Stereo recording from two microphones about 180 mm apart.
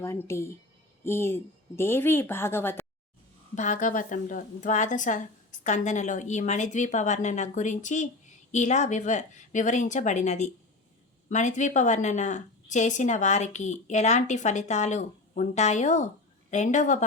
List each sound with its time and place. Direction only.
0.0 s speech: 15° left (ahead or behind)
3.5 s a woman's voice: 45° left (ahead or behind)